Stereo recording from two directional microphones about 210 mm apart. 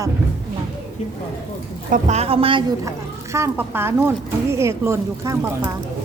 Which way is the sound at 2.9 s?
15° right (ahead or behind).